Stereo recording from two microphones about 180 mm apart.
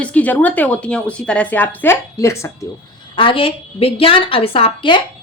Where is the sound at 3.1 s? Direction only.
30° left (ahead or behind).